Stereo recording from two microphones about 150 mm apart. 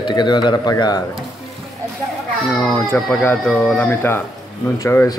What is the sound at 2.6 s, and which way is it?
A man's voice, 5° left (ahead or behind).